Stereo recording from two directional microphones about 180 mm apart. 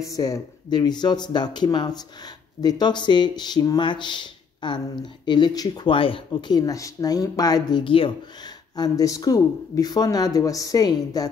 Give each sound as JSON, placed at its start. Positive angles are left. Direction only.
{"t": 0.0, "sound": "speech", "side_deg": 20}